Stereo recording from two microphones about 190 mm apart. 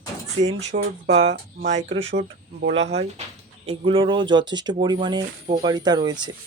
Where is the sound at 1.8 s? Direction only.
90° right.